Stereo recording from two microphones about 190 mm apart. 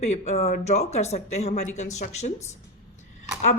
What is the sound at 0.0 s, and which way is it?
Speech, 35° left (ahead or behind).